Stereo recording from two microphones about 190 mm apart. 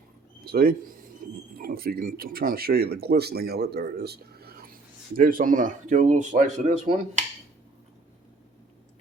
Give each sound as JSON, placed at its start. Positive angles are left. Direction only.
{"t": 0.4, "sound": "speech", "side_deg": -50}